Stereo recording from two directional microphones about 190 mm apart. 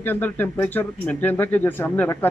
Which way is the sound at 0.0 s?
10° left (ahead or behind).